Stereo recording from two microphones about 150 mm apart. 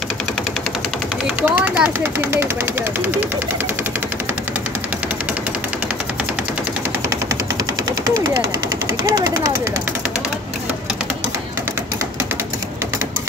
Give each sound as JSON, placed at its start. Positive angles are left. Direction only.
{"t": 1.4, "sound": "speech", "side_deg": -10}
{"t": 8.1, "sound": "speech", "side_deg": -20}